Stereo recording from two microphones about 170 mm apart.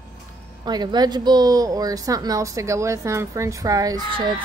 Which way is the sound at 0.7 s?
25° right (ahead or behind).